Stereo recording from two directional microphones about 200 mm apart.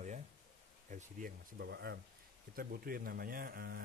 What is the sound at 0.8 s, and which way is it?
Speech, 40° right (ahead or behind).